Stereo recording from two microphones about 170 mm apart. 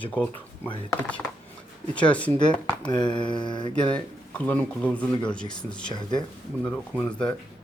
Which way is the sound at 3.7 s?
5° left (ahead or behind).